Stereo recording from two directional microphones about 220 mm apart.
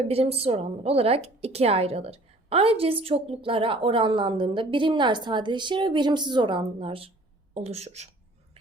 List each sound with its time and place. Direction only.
0.1 s a woman's voice: 25° right (ahead or behind)